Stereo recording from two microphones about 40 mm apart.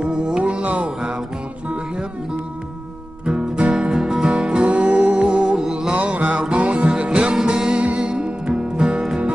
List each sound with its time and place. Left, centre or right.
0.0 s music: right
3.3 s music: right
4.6 s music: right
5.6 s music: right
6.5 s music: right
7.8 s music: right
8.2 s music: right